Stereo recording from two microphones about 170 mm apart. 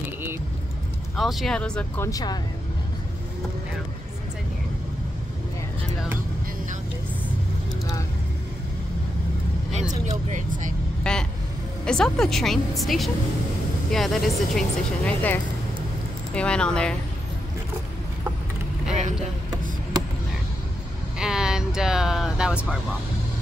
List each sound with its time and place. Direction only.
1.1 s speech: centre (ahead or behind)
2.0 s speech: 20° left (ahead or behind)
9.7 s speech: 40° right (ahead or behind)
11.1 s vehicle: 5° left (ahead or behind)
11.8 s speech: 5° left (ahead or behind)
21.2 s speech: 5° right (ahead or behind)